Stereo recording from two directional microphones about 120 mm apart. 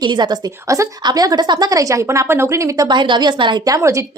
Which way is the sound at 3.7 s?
25° right (ahead or behind).